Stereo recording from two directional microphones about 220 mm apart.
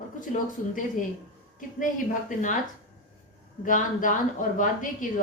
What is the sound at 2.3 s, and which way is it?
Speech, 35° left (ahead or behind).